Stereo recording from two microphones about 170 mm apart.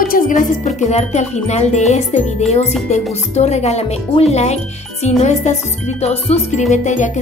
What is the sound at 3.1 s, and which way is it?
Music, 40° left (ahead or behind).